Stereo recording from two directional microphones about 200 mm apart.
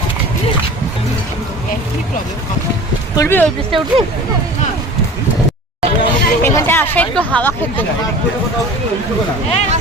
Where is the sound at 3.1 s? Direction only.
15° left (ahead or behind).